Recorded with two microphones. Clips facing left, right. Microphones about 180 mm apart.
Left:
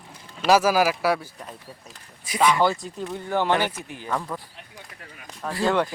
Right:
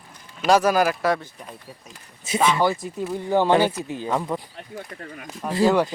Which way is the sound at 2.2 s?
25° right (ahead or behind).